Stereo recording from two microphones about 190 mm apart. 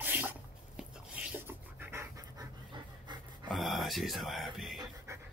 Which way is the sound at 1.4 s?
10° right (ahead or behind).